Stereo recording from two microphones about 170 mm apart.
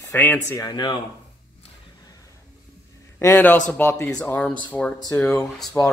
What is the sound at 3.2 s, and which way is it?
Speech, 10° left (ahead or behind).